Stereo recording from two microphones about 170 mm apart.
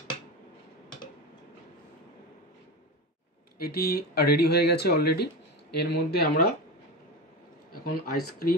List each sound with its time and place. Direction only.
3.6 s speech: 65° left (ahead or behind)
7.7 s speech: 60° left (ahead or behind)